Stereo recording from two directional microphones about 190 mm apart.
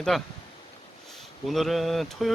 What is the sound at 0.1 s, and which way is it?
Speech, centre (ahead or behind).